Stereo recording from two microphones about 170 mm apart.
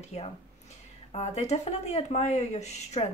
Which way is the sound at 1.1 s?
40° left (ahead or behind).